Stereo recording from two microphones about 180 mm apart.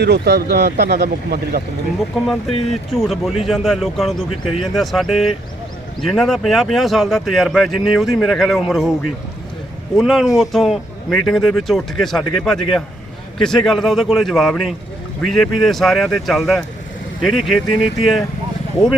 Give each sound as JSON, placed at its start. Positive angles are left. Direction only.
{"t": 0.0, "sound": "speech", "side_deg": -65}
{"t": 2.2, "sound": "speech", "side_deg": 0}
{"t": 10.0, "sound": "speech", "side_deg": 0}